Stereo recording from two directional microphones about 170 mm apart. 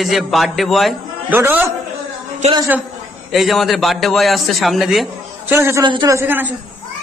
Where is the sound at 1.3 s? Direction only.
15° right (ahead or behind).